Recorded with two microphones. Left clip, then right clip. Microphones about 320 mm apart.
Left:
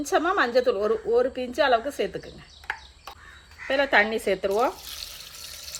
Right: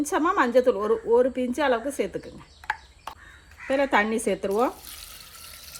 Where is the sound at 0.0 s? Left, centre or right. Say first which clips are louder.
Even; right.